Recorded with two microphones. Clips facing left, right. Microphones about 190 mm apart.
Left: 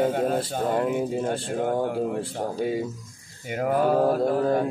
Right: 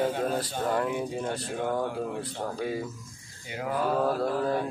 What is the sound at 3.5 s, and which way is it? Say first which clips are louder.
Mantra: left 6 dB; 55° left (ahead or behind).